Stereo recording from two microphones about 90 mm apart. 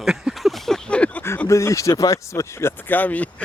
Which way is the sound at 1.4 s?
35° left (ahead or behind).